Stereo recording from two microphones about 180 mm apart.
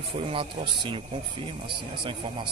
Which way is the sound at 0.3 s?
30° right (ahead or behind).